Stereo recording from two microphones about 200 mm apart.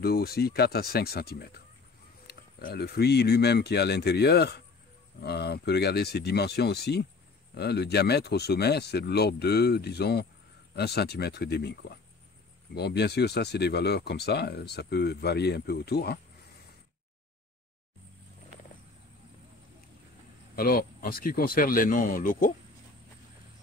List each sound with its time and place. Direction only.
0.0 s speech: 50° left (ahead or behind)
20.5 s speech: 45° left (ahead or behind)